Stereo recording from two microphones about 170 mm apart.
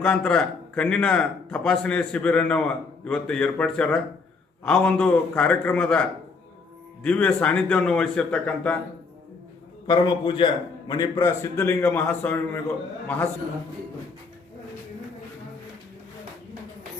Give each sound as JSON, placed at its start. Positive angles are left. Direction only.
{"t": 0.0, "sound": "a man's voice", "side_deg": 10}
{"t": 9.8, "sound": "a man's voice", "side_deg": 25}